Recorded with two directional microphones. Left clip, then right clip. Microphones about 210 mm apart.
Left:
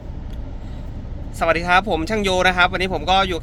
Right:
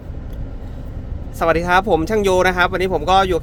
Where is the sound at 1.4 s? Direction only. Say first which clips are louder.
Right 1 dB; 20° right (ahead or behind).